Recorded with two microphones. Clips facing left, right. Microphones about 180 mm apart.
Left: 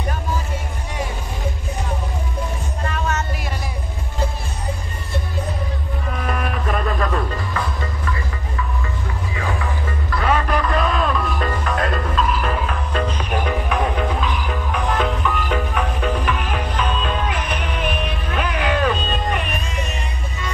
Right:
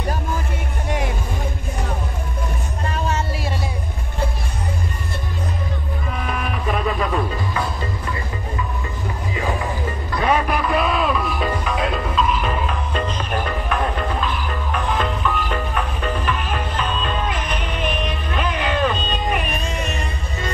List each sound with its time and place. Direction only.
2.9 s music: 30° right (ahead or behind)
6.2 s music: centre (ahead or behind)
10.1 s music: 15° right (ahead or behind)
13.2 s music: 10° left (ahead or behind)